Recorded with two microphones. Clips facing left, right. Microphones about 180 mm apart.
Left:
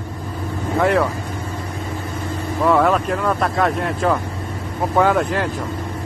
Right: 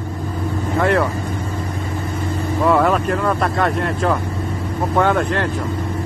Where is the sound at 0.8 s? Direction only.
Centre (ahead or behind).